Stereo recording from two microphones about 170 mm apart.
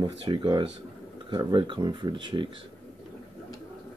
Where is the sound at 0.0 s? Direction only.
30° right (ahead or behind).